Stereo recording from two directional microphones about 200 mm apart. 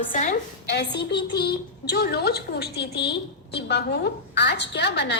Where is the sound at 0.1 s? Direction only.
40° left (ahead or behind).